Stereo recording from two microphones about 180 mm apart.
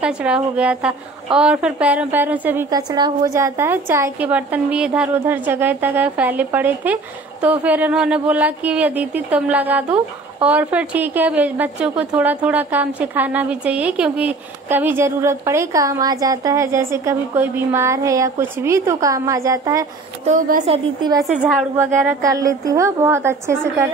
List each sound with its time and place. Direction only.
0.0 s a woman's voice: 5° right (ahead or behind)
2.7 s a woman's voice: 25° right (ahead or behind)
20.2 s a woman's voice: 45° right (ahead or behind)
20.6 s a woman's voice: 35° right (ahead or behind)
21.2 s a woman's voice: 5° right (ahead or behind)
21.7 s a woman's voice: 15° right (ahead or behind)